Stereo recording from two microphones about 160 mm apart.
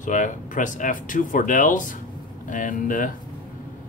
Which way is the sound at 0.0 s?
50° left (ahead or behind).